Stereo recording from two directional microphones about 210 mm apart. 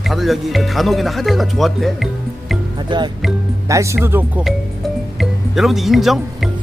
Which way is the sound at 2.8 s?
20° right (ahead or behind).